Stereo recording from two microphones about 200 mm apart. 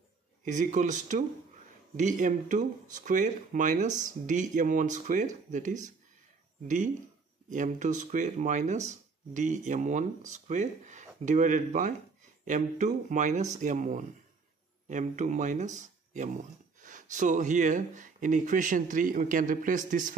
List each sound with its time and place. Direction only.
0.5 s speech: 35° right (ahead or behind)
7.4 s speech: 40° right (ahead or behind)